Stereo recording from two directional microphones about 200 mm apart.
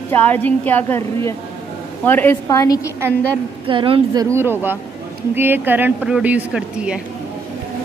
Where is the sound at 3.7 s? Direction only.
25° right (ahead or behind).